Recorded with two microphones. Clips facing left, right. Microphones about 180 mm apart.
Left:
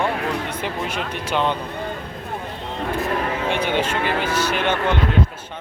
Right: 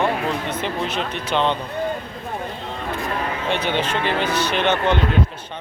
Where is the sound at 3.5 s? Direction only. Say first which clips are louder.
Right 1 dB; 10° left (ahead or behind).